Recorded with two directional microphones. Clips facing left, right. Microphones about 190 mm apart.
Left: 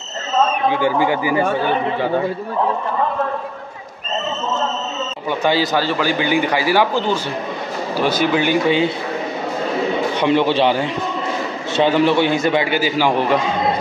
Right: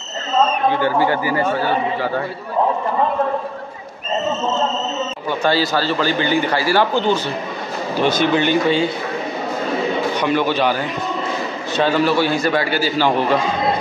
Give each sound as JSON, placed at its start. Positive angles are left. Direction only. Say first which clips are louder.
{"t": 0.4, "sound": "a man's voice", "louder": "even", "side_deg": 10}
{"t": 5.4, "sound": "a man's voice", "louder": "left 1 dB", "side_deg": 20}
{"t": 10.1, "sound": "a man's voice", "louder": "left 5 dB", "side_deg": 25}